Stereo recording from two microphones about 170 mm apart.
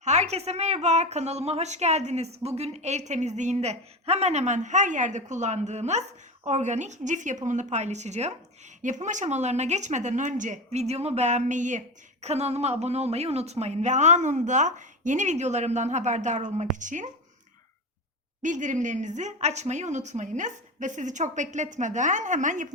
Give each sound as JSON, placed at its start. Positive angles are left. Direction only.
{"t": 0.0, "sound": "a woman's voice", "side_deg": -40}
{"t": 18.4, "sound": "a woman's voice", "side_deg": -45}